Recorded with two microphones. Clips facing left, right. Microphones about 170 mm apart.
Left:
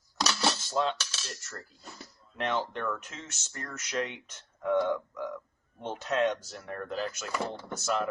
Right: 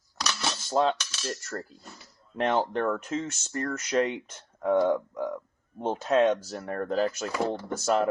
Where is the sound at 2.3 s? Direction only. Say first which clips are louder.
Right 6 dB; 40° right (ahead or behind).